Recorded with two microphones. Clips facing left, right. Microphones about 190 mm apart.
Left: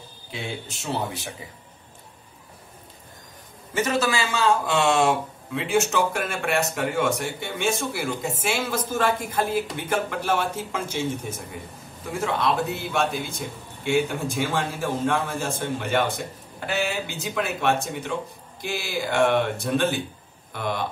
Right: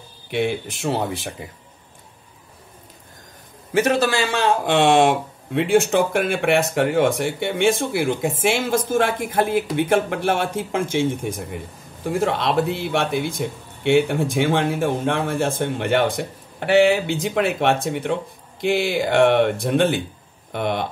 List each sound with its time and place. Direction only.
0.3 s speech: 70° right (ahead or behind)
3.7 s speech: 55° right (ahead or behind)
11.3 s speech: 70° right (ahead or behind)